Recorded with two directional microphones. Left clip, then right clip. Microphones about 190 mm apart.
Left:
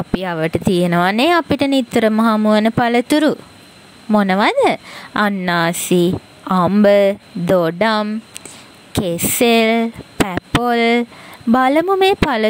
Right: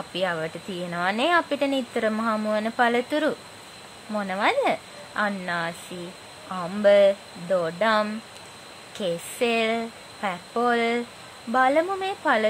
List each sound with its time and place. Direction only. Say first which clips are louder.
0.1 s speech: left 7 dB; 45° left (ahead or behind)